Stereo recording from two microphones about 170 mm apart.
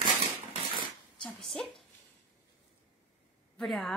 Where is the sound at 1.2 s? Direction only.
Centre (ahead or behind).